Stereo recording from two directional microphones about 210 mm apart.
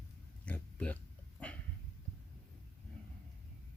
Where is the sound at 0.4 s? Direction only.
5° left (ahead or behind).